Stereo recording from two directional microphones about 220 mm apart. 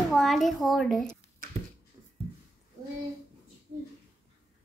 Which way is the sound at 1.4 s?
40° right (ahead or behind).